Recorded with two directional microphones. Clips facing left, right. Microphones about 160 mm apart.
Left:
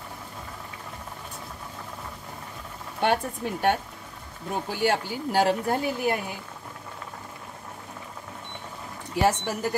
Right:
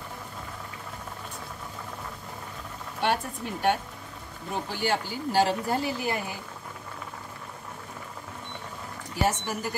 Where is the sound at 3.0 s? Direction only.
55° left (ahead or behind).